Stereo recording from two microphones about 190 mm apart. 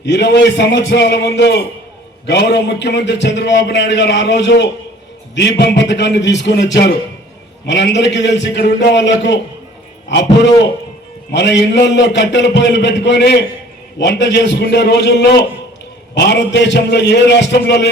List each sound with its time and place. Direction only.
0.0 s a man's voice: 65° left (ahead or behind)